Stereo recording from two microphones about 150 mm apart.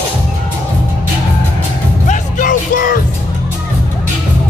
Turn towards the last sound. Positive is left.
turn(degrees=65)  # may be behind; listen again after turning